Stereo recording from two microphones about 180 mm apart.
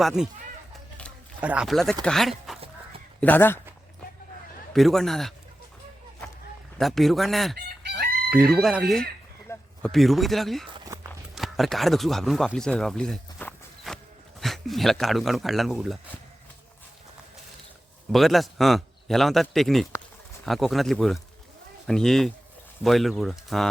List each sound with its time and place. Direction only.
0.0 s a man's voice: 5° right (ahead or behind)
1.4 s a man's voice: 5° right (ahead or behind); by 3.6 s 10° left (ahead or behind)
4.7 s a man's voice: centre (ahead or behind)
6.7 s a man's voice: centre (ahead or behind)
10.8 s walk: 20° right (ahead or behind)
11.3 s a man's voice: centre (ahead or behind)
18.1 s a man's voice: centre (ahead or behind)